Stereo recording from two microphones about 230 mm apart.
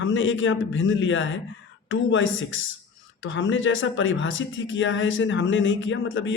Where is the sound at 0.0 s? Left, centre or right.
Left.